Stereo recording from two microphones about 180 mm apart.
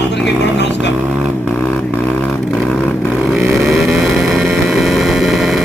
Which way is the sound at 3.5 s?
Centre (ahead or behind).